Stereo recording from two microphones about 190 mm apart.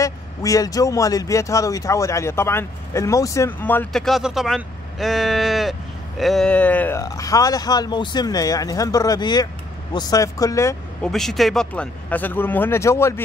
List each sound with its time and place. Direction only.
0.0 s speech: 15° left (ahead or behind)
11.1 s speech: centre (ahead or behind)